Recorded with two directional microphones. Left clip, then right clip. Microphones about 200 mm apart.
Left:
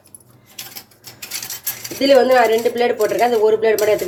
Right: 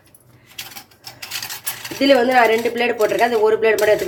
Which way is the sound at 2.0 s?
20° right (ahead or behind).